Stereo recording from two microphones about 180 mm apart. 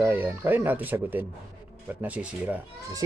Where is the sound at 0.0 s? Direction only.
10° right (ahead or behind).